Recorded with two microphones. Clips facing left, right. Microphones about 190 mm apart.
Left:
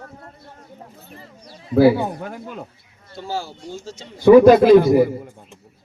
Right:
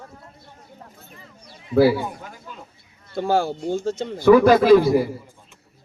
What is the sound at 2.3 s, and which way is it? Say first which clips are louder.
Speech: left 8 dB; 65° left (ahead or behind).